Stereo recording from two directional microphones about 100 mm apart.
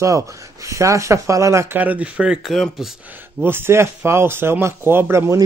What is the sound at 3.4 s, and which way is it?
A man's voice, 25° right (ahead or behind).